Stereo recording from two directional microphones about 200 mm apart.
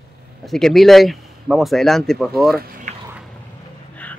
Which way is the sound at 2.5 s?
45° right (ahead or behind).